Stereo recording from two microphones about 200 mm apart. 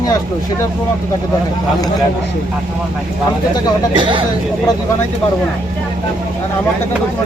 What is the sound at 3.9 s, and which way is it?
Speech, 25° right (ahead or behind).